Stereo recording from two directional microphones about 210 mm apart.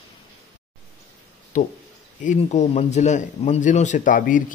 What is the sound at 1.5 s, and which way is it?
A man's voice, 40° left (ahead or behind).